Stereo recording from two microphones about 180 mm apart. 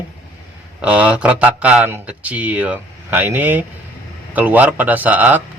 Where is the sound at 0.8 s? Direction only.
5° right (ahead or behind).